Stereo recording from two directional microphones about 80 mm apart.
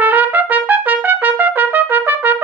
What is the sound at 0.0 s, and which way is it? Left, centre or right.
Trumpet, right.